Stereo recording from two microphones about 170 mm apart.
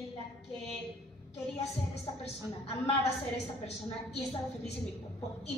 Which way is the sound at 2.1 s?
25° left (ahead or behind).